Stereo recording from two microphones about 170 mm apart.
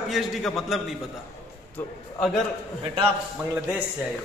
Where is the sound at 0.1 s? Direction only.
Centre (ahead or behind).